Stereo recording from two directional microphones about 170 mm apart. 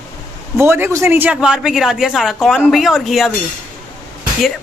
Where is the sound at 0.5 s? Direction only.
15° right (ahead or behind).